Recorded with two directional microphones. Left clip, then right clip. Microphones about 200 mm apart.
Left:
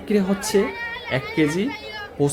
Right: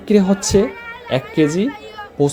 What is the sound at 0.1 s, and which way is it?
Speech, 25° right (ahead or behind).